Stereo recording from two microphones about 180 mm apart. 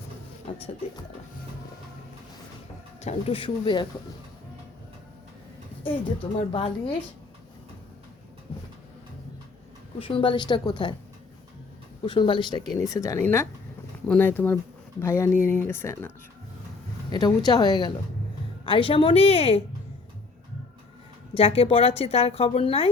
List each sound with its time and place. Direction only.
0.5 s speech: 30° left (ahead or behind)
3.0 s a woman's voice: 35° left (ahead or behind)
6.5 s speech: 30° left (ahead or behind)
8.5 s a sound: 35° left (ahead or behind)
10.0 s speech: 30° left (ahead or behind)
12.0 s a woman's voice: 25° left (ahead or behind)
21.3 s a woman's voice: 35° left (ahead or behind)